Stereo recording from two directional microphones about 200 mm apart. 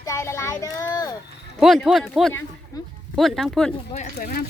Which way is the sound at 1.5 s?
Centre (ahead or behind).